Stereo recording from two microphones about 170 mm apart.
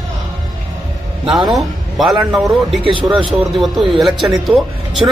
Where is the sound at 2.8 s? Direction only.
30° right (ahead or behind).